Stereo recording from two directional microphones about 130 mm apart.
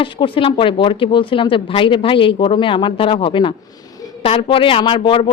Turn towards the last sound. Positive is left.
turn(degrees=45)  # may be behind; listen again after turning